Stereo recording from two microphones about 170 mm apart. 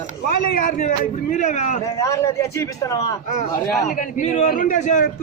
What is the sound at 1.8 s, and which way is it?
A man's voice, 20° left (ahead or behind).